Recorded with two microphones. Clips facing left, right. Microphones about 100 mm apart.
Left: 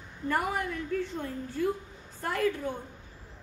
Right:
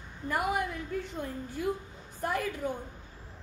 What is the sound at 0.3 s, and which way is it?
A woman's voice, 15° right (ahead or behind).